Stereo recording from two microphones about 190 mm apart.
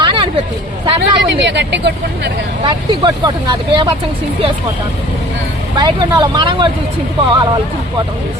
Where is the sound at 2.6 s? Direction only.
25° right (ahead or behind).